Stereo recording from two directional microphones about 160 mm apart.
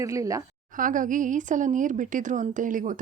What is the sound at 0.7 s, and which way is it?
A woman's voice, 55° right (ahead or behind).